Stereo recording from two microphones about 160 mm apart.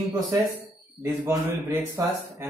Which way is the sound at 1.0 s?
15° right (ahead or behind).